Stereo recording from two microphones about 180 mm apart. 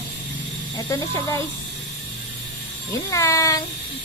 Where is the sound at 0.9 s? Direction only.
15° left (ahead or behind).